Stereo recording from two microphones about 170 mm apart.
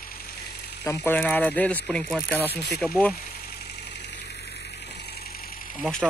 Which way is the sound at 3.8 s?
90° left.